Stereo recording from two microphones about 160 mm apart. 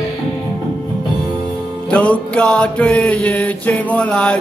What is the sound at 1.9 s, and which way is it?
Music, 5° left (ahead or behind).